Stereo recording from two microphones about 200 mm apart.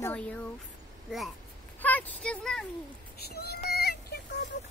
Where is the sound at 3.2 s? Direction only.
50° left (ahead or behind).